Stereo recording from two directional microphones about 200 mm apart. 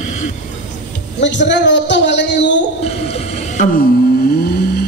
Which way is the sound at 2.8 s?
30° left (ahead or behind).